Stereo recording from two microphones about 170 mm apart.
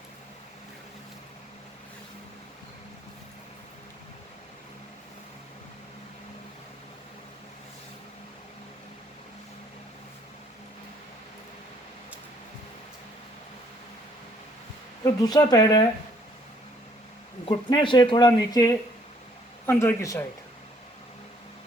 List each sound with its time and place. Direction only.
15.0 s speech: 20° left (ahead or behind)
17.5 s speech: 30° left (ahead or behind)